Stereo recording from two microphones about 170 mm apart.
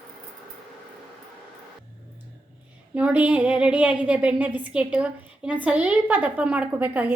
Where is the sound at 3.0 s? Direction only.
10° right (ahead or behind).